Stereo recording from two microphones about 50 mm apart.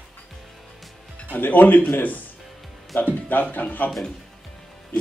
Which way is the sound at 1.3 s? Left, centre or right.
Left.